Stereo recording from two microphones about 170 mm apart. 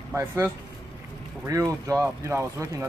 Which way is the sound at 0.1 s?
15° right (ahead or behind).